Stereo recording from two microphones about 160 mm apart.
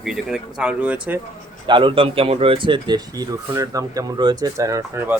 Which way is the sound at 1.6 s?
30° right (ahead or behind).